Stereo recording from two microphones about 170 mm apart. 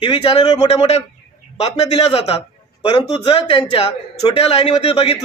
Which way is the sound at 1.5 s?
40° left (ahead or behind).